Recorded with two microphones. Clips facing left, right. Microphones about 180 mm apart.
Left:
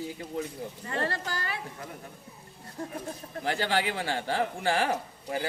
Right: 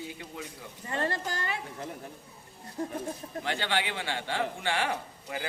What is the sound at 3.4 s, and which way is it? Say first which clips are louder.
A man's voice: left 3 dB; 40° left (ahead or behind).